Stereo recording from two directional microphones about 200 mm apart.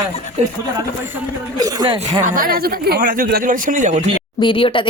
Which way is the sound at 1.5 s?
20° right (ahead or behind).